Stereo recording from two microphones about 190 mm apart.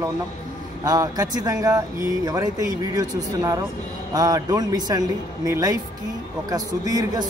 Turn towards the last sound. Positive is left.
turn(degrees=-20)  # may be behind; listen again after turning